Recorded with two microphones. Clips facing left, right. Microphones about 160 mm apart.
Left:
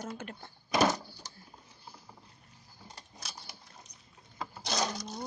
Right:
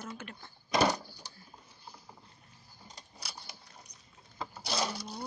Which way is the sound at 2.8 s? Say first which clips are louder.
Left 1 dB; 15° right (ahead or behind).